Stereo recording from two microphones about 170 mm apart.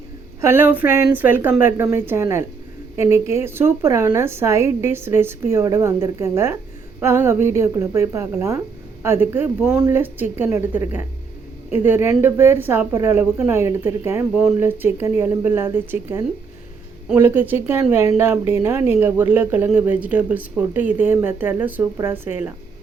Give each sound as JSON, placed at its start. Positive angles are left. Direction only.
{"t": 0.4, "sound": "speech", "side_deg": -15}